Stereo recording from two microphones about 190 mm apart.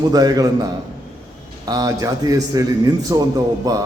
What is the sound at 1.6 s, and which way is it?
A man's voice, 20° right (ahead or behind).